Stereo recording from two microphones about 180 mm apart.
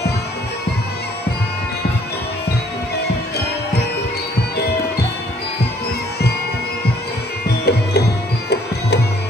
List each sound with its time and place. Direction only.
7.4 s music: 65° left (ahead or behind)